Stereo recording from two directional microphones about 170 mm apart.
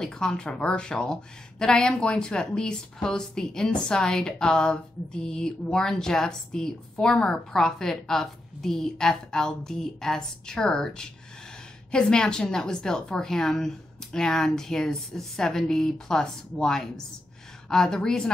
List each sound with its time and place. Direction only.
0.0 s speech: 5° left (ahead or behind)